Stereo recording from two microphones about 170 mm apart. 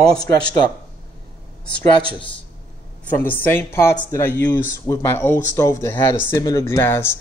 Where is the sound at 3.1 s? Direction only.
10° left (ahead or behind).